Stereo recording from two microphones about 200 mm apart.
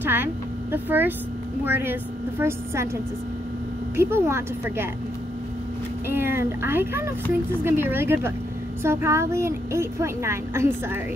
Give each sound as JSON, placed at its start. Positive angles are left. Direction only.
{"t": 0.0, "sound": "a woman's voice", "side_deg": -10}
{"t": 3.9, "sound": "a woman's voice", "side_deg": -15}
{"t": 6.0, "sound": "a woman's voice", "side_deg": -10}